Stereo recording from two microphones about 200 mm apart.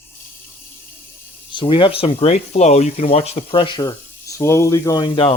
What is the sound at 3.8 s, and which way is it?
Speech, 15° left (ahead or behind).